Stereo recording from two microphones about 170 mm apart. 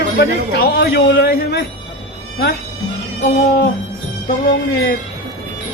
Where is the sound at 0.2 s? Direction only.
70° left (ahead or behind).